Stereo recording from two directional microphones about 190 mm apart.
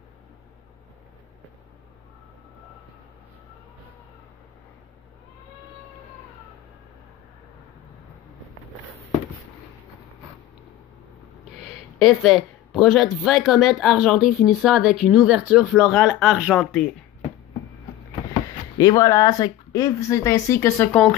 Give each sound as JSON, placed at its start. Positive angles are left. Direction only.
{"t": 12.0, "sound": "speech", "side_deg": 0}
{"t": 18.8, "sound": "speech", "side_deg": 20}